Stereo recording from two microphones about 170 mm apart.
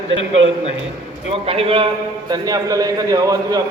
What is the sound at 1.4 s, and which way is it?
Speech, 35° right (ahead or behind).